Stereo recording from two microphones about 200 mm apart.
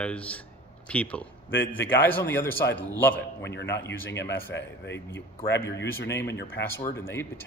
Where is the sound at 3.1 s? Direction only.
60° left (ahead or behind).